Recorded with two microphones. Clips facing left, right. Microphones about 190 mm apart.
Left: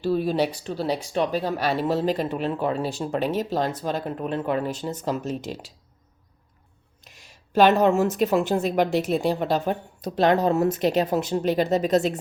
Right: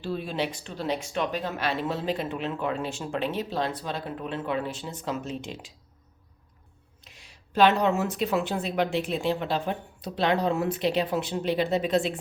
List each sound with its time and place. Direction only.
0.0 s speech: 40° left (ahead or behind)
7.2 s speech: 45° left (ahead or behind)